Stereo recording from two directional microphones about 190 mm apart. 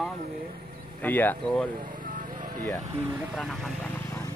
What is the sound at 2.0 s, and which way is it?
Vehicle, 45° right (ahead or behind).